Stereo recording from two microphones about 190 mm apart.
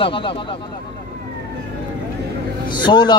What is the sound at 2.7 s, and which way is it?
Speech, 25° left (ahead or behind).